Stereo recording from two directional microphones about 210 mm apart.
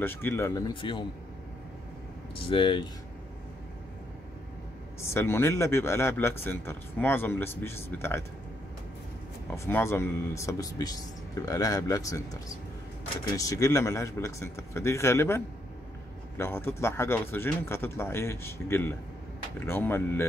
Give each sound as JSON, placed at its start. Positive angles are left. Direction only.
{"t": 0.0, "sound": "a man's voice", "side_deg": 10}
{"t": 2.3, "sound": "speech", "side_deg": 25}
{"t": 5.0, "sound": "a man's voice", "side_deg": 10}
{"t": 9.7, "sound": "a man's voice", "side_deg": 10}